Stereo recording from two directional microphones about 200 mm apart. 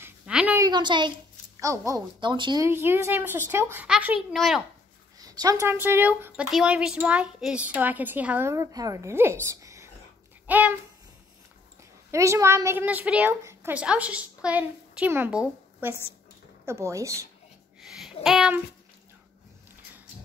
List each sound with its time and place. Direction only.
0.0 s a sound: 5° right (ahead or behind)
0.7 s a child's voice: 20° right (ahead or behind); by 4.6 s centre (ahead or behind)
5.2 s a woman's voice: 20° right (ahead or behind)
10.4 s babbling: 10° right (ahead or behind)
12.1 s a woman's voice: 15° right (ahead or behind)
17.7 s a sound: centre (ahead or behind)